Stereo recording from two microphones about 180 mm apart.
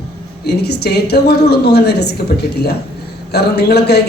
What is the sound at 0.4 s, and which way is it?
A man's voice, 65° left (ahead or behind).